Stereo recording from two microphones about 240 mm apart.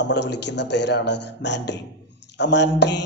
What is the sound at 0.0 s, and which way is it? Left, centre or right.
A man's voice, left.